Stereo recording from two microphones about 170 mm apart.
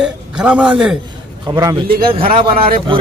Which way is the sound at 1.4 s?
20° right (ahead or behind).